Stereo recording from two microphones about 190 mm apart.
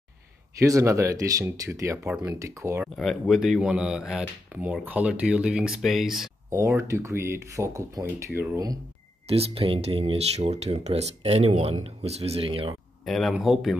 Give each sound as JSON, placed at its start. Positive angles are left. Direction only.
{"t": 0.6, "sound": "speech", "side_deg": -15}
{"t": 3.0, "sound": "speech", "side_deg": 0}
{"t": 6.5, "sound": "speech", "side_deg": -15}
{"t": 9.3, "sound": "speech", "side_deg": -30}
{"t": 13.0, "sound": "speech", "side_deg": 0}